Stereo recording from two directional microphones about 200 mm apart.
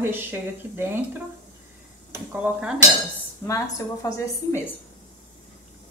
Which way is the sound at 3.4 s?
15° left (ahead or behind).